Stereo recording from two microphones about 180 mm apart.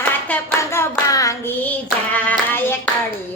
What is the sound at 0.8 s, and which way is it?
Hands, 20° left (ahead or behind).